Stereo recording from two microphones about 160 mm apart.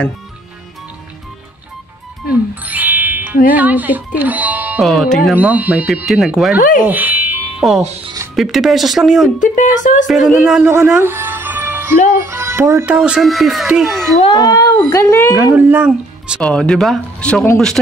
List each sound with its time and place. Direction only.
2.6 s music: 10° right (ahead or behind)
3.5 s speech: 10° right (ahead or behind)
4.8 s speech: centre (ahead or behind)
5.3 s speech: 10° right (ahead or behind)
6.8 s music: 10° right (ahead or behind)
7.8 s speech: 40° right (ahead or behind)
8.4 s speech: centre (ahead or behind)
9.4 s speech: 55° left (ahead or behind)
10.0 s speech: centre (ahead or behind)
11.0 s music: 15° right (ahead or behind)
12.2 s speech: 15° right (ahead or behind); by 14.1 s centre (ahead or behind)
14.3 s speech: 20° left (ahead or behind)
15.3 s speech: 10° right (ahead or behind)
16.3 s speech: 5° left (ahead or behind)